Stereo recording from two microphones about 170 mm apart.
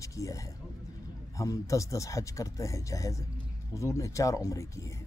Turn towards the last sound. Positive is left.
turn(degrees=20)  # may be behind; listen again after turning